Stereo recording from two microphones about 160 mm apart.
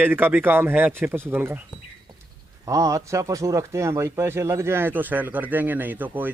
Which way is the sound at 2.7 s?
20° right (ahead or behind).